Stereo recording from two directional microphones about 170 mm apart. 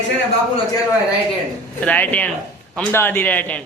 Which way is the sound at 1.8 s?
10° left (ahead or behind).